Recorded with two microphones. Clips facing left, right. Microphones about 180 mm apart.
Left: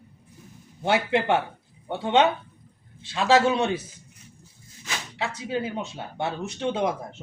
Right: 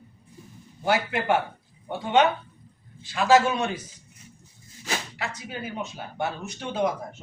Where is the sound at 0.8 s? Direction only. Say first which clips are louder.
Left 2 dB; 25° left (ahead or behind).